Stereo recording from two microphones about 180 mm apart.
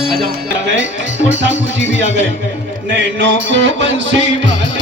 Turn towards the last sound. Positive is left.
turn(degrees=-90)